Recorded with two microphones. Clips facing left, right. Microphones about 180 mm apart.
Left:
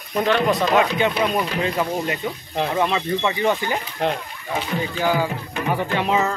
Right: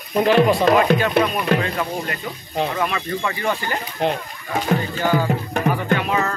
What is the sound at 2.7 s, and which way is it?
Speech, 20° left (ahead or behind).